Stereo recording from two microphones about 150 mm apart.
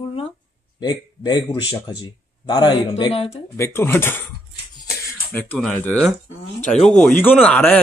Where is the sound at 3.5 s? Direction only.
15° left (ahead or behind).